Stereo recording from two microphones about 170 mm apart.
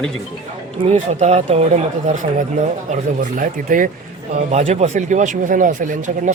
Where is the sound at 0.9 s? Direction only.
40° right (ahead or behind).